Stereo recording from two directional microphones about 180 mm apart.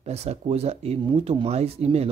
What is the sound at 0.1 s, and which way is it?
Speech, 35° right (ahead or behind).